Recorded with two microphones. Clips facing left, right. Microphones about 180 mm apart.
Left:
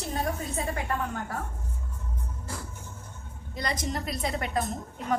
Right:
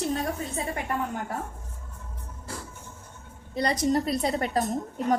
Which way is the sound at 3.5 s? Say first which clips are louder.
Right 8 dB; 35° right (ahead or behind).